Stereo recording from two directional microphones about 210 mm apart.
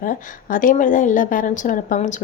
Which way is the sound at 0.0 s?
40° left (ahead or behind).